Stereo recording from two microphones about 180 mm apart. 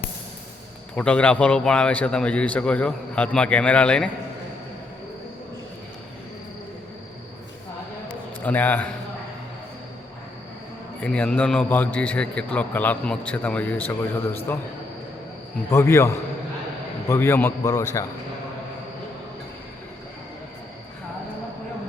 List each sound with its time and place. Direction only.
0.9 s a man's voice: 5° left (ahead or behind)
8.0 s a sound: 10° left (ahead or behind)
11.0 s a man's voice: 5° left (ahead or behind)
15.7 s a man's voice: 15° left (ahead or behind)